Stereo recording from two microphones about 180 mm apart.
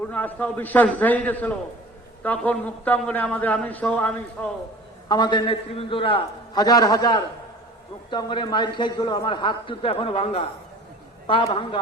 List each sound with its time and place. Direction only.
0.1 s a man's voice: 10° left (ahead or behind)
5.0 s a man's voice: 25° left (ahead or behind)